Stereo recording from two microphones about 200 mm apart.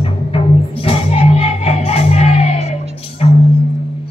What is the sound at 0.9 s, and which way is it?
Music, 30° left (ahead or behind).